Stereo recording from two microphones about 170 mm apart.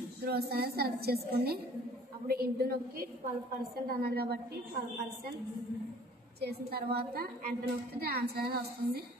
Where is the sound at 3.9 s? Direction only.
65° right (ahead or behind).